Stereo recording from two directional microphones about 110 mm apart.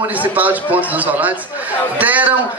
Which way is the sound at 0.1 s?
15° right (ahead or behind).